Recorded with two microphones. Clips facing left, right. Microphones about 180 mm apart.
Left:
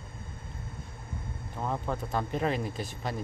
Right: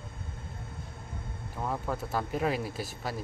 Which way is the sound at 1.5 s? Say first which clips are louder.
Even; centre (ahead or behind).